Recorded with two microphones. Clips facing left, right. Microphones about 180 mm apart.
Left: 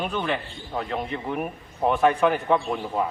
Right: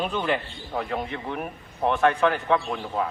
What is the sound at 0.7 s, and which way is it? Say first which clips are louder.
A man's voice: even; centre (ahead or behind).